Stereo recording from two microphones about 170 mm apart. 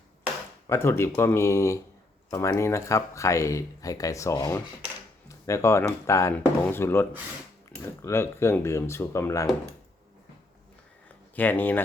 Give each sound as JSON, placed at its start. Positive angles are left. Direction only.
{"t": 0.7, "sound": "speech", "side_deg": 15}
{"t": 11.3, "sound": "speech", "side_deg": 10}